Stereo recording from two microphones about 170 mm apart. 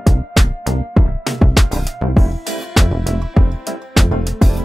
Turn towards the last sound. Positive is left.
turn(degrees=0)  # may be behind; listen again after turning